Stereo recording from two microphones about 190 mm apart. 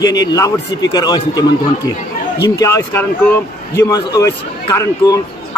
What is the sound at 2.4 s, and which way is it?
Speech, 20° left (ahead or behind).